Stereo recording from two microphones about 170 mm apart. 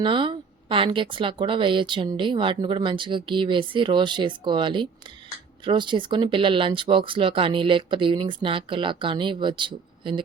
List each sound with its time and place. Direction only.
0.0 s speech: 30° right (ahead or behind)